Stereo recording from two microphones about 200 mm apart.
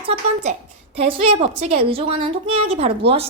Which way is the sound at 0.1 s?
25° right (ahead or behind).